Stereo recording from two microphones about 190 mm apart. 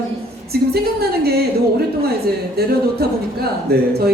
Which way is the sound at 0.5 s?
55° right (ahead or behind).